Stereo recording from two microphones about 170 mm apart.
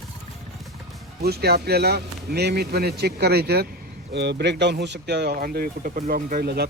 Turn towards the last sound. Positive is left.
turn(degrees=-70)  # may be behind; listen again after turning